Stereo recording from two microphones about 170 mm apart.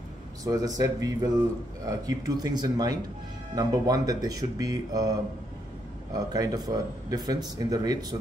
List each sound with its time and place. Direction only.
0.4 s speech: 20° right (ahead or behind)
6.1 s speech: 20° right (ahead or behind)